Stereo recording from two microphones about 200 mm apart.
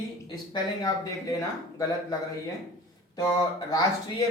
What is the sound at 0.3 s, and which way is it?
Speech, 20° left (ahead or behind).